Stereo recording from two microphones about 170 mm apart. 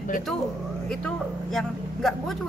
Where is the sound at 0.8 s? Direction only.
5° left (ahead or behind).